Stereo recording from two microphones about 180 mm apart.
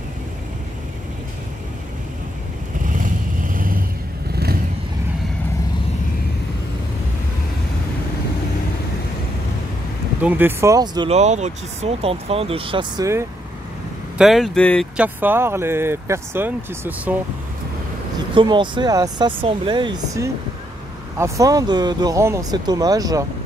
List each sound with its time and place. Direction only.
2.9 s vehicle: 50° right (ahead or behind)
10.2 s speech: 10° right (ahead or behind)
11.1 s speech: 40° right (ahead or behind); by 13.3 s 15° right (ahead or behind)
14.1 s speech: centre (ahead or behind)
15.0 s speech: 10° right (ahead or behind)
18.3 s speech: 25° right (ahead or behind)